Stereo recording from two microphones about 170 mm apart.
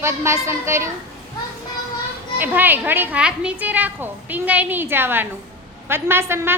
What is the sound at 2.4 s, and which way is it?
A woman's voice, 10° right (ahead or behind).